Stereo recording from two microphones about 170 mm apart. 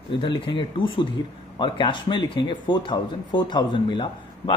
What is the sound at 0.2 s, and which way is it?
Speech, 25° left (ahead or behind).